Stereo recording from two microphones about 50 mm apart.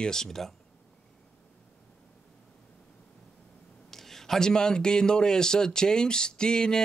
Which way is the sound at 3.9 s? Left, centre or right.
Centre.